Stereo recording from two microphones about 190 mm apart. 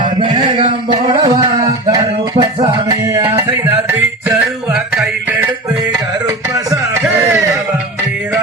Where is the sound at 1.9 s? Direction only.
20° right (ahead or behind).